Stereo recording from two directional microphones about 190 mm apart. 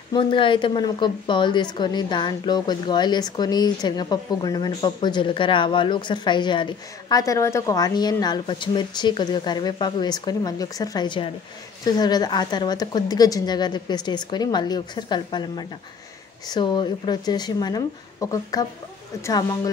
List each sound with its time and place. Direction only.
0.1 s a woman's voice: 25° left (ahead or behind)